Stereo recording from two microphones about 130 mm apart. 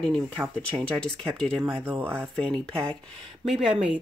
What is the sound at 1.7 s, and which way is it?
Speech, 15° right (ahead or behind).